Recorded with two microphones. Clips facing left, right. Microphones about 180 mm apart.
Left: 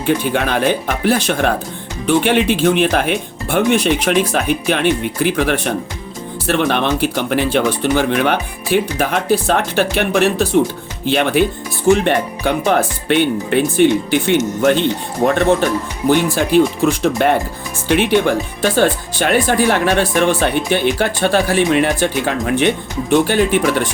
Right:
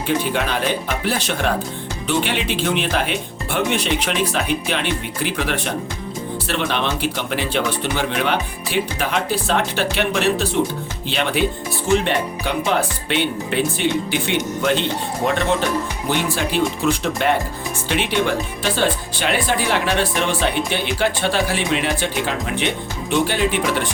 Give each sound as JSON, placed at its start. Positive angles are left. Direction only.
{"t": 0.3, "sound": "speech", "side_deg": 55}